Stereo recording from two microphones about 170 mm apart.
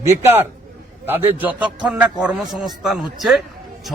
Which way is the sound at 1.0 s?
10° right (ahead or behind).